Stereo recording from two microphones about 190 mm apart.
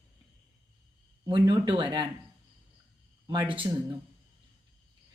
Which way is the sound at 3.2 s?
20° right (ahead or behind).